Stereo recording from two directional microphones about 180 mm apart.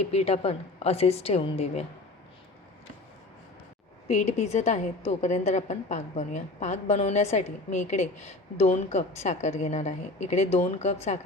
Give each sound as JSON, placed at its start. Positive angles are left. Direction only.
{"t": 0.1, "sound": "a woman's voice", "side_deg": 35}
{"t": 4.1, "sound": "a woman's voice", "side_deg": 40}